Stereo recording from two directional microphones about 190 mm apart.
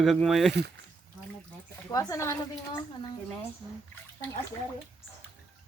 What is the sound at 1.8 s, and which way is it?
Speech, 15° left (ahead or behind).